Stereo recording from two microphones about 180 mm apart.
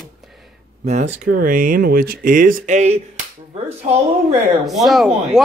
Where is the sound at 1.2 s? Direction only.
50° right (ahead or behind).